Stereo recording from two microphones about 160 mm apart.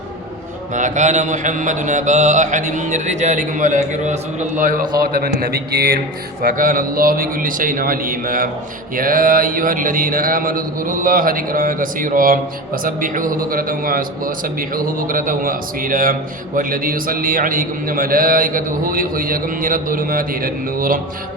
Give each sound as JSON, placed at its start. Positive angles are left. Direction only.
{"t": 0.7, "sound": "mantra", "side_deg": -50}
{"t": 4.9, "sound": "a man's voice", "side_deg": -65}
{"t": 6.4, "sound": "mantra", "side_deg": -60}